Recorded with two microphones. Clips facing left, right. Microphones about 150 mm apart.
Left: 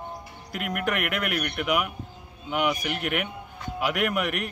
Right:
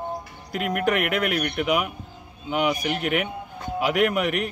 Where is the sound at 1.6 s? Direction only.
25° right (ahead or behind).